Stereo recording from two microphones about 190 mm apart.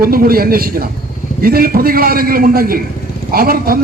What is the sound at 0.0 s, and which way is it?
A man's voice, 50° right (ahead or behind).